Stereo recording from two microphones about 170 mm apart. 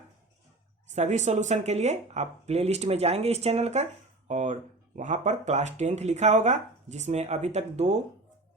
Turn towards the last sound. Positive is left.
turn(degrees=-40)  # may be behind; listen again after turning